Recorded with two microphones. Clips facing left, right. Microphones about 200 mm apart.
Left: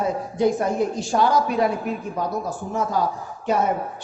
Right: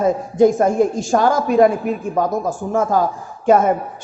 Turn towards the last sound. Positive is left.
turn(degrees=-50)  # may be behind; listen again after turning